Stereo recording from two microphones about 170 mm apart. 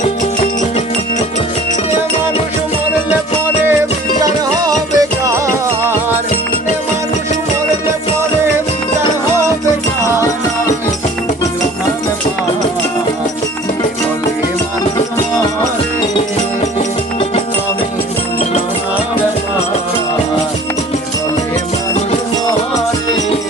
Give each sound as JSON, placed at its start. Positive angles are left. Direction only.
{"t": 4.2, "sound": "music", "side_deg": -20}